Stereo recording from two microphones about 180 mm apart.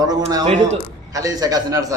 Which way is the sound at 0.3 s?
20° right (ahead or behind).